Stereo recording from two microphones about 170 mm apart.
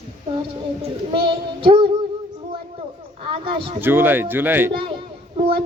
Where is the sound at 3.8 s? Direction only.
10° right (ahead or behind).